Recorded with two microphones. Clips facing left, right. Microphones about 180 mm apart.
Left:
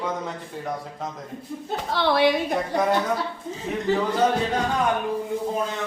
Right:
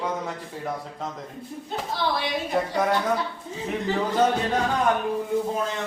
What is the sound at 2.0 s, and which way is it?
Speech, 70° left (ahead or behind).